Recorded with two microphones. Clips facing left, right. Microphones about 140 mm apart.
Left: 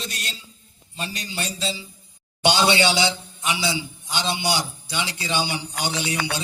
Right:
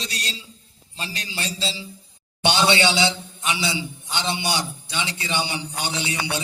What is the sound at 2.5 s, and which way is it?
A man's voice, 20° right (ahead or behind).